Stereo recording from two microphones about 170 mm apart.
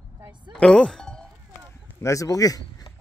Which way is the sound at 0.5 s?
5° left (ahead or behind).